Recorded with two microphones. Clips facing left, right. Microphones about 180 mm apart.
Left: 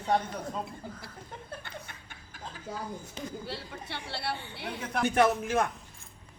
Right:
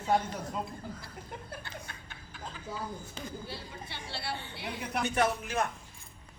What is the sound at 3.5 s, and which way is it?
Speech, 65° left (ahead or behind).